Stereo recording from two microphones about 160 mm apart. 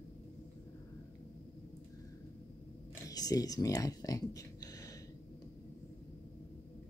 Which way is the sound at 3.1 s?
20° left (ahead or behind).